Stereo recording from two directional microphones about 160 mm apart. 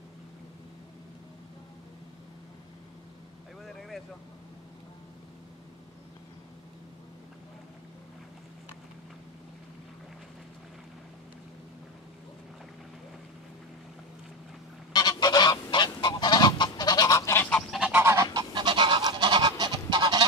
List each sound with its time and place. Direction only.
14.9 s goose: 25° left (ahead or behind); by 17.9 s centre (ahead or behind)
17.9 s goose: 15° right (ahead or behind)